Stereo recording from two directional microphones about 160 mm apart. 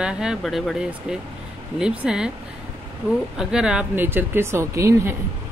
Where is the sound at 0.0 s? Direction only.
5° right (ahead or behind).